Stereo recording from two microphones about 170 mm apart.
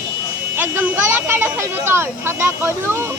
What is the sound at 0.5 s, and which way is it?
Speech, 10° right (ahead or behind).